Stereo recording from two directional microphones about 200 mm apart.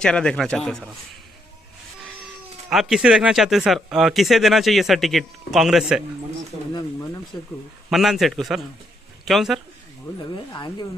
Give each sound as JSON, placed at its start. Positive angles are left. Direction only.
{"t": 0.0, "sound": "speech", "side_deg": 5}
{"t": 2.7, "sound": "speech", "side_deg": 0}
{"t": 7.3, "sound": "speech", "side_deg": 20}
{"t": 7.9, "sound": "a man's voice", "side_deg": 0}
{"t": 10.3, "sound": "speech", "side_deg": 20}